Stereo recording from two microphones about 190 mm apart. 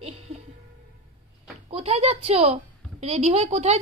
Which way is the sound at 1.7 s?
30° right (ahead or behind).